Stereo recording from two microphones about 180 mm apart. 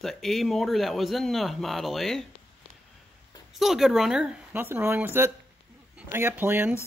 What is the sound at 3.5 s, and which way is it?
Speech, centre (ahead or behind).